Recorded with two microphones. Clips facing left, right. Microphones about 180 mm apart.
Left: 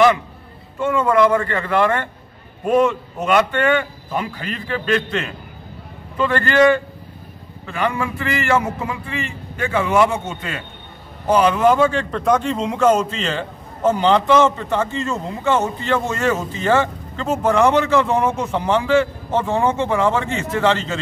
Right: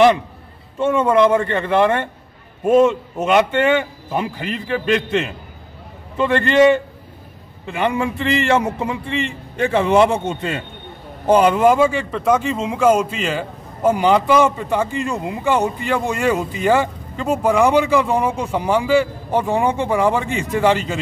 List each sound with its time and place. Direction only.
0.7 s a man's voice: 25° right (ahead or behind)
11.5 s a man's voice: 10° right (ahead or behind)